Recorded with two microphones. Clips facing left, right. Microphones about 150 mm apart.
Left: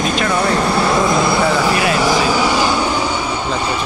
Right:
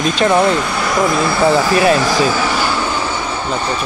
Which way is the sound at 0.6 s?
30° left (ahead or behind).